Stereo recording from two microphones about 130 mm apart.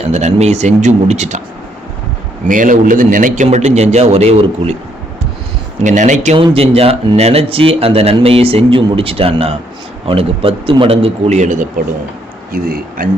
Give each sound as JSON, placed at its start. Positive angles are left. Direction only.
{"t": 0.0, "sound": "a man's voice", "side_deg": -60}
{"t": 2.5, "sound": "a man's voice", "side_deg": -90}
{"t": 5.8, "sound": "speech", "side_deg": -70}
{"t": 6.3, "sound": "speech", "side_deg": -45}
{"t": 13.0, "sound": "speech", "side_deg": -90}